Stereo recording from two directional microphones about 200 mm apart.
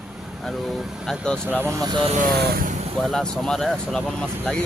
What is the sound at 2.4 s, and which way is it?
Speech, 50° right (ahead or behind).